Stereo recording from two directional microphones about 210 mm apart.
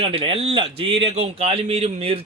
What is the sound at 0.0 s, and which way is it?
Speech, 25° right (ahead or behind).